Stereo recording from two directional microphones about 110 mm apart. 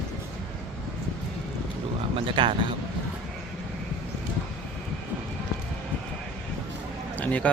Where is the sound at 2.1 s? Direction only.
50° right (ahead or behind).